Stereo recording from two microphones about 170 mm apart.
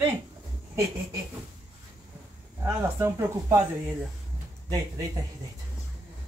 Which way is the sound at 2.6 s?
15° right (ahead or behind).